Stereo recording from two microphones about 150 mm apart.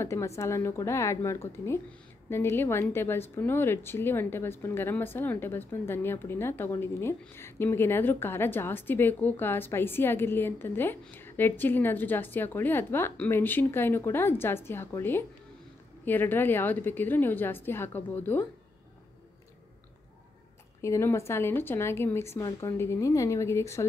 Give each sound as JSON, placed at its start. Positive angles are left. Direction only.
{"t": 0.0, "sound": "a woman's voice", "side_deg": 20}
{"t": 20.8, "sound": "a woman's voice", "side_deg": 20}